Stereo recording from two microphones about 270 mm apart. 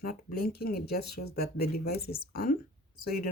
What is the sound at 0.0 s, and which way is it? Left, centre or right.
Speech, left.